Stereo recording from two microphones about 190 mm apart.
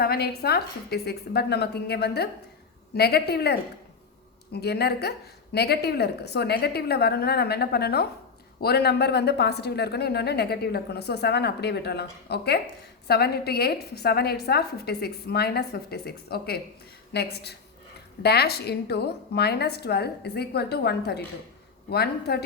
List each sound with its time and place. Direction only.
0.0 s a woman's voice: 55° left (ahead or behind)